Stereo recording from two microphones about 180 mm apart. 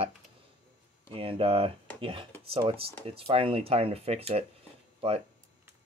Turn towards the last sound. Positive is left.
turn(degrees=-35)  # may be behind; listen again after turning